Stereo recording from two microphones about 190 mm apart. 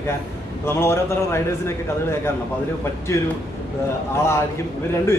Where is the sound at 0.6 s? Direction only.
15° left (ahead or behind).